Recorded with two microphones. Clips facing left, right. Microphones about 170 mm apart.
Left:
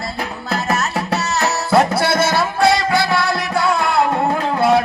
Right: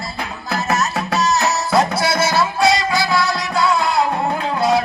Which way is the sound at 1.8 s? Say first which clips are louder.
Left 2 dB; 60° left (ahead or behind).